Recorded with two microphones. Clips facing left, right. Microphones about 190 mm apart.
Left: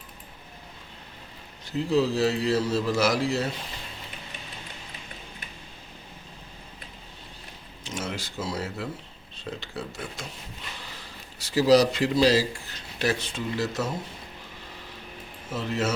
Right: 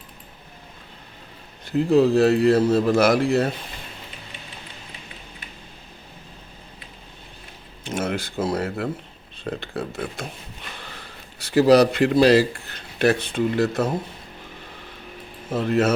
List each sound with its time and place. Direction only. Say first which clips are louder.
1.6 s a man's voice: right 7 dB; 55° right (ahead or behind)
7.9 s a man's voice: right 7 dB; 55° right (ahead or behind)
15.5 s a man's voice: right 8 dB; 55° right (ahead or behind)